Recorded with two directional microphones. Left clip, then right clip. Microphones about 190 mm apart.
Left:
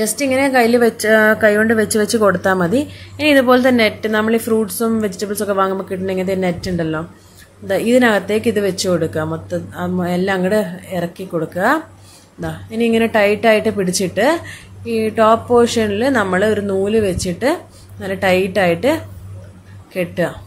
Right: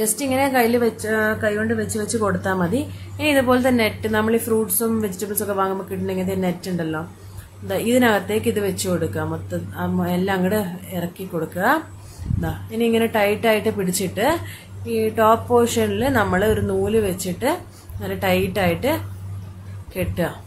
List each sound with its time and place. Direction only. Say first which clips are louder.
0.0 s a woman's voice: left 4 dB; 15° left (ahead or behind)